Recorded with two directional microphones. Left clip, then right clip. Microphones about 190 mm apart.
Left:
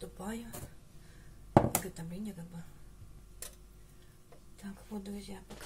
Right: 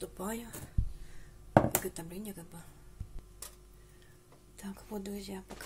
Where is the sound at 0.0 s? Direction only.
55° right (ahead or behind).